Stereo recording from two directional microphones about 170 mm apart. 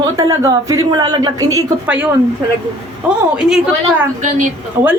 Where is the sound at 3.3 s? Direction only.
5° right (ahead or behind).